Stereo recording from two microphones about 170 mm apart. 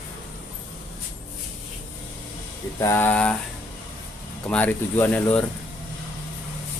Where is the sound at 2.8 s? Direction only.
10° left (ahead or behind).